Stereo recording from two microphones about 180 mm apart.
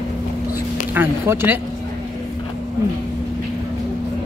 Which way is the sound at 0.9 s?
10° right (ahead or behind).